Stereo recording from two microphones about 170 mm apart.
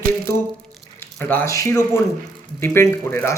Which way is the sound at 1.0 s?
10° left (ahead or behind).